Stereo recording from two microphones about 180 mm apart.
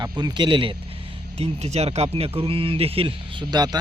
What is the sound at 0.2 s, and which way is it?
Speech, 25° right (ahead or behind).